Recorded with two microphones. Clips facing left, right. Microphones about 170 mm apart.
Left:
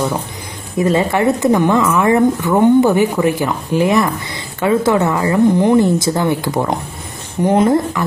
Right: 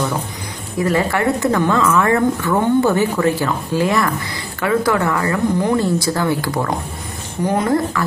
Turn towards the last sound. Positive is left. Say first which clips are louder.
# left 4 dB
turn(degrees=20)  # may be behind; listen again after turning